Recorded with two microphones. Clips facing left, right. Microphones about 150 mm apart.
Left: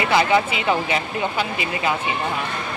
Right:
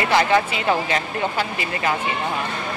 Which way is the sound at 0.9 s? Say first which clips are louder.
Even; 15° left (ahead or behind).